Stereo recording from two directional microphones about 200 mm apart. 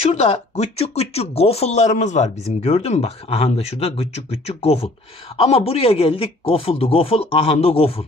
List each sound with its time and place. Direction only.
0.0 s speech: 30° left (ahead or behind)